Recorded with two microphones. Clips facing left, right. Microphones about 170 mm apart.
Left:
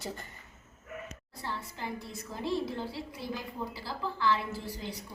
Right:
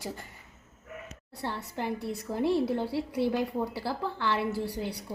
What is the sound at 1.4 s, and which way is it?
A woman's voice, 65° right (ahead or behind).